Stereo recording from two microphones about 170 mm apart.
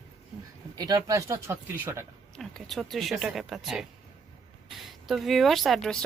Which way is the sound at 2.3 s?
Centre (ahead or behind).